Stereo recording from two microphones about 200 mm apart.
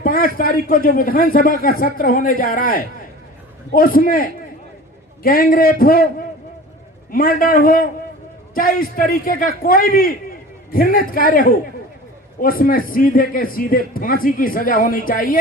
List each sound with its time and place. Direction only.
0.0 s a man's voice: 45° left (ahead or behind)